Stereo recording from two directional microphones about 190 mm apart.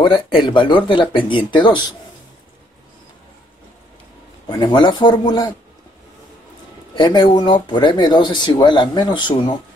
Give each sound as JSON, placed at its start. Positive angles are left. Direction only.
{"t": 0.0, "sound": "speech", "side_deg": 25}
{"t": 4.5, "sound": "speech", "side_deg": 25}
{"t": 7.0, "sound": "speech", "side_deg": 25}